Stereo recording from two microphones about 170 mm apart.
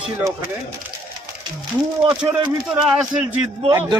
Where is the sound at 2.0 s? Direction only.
30° right (ahead or behind).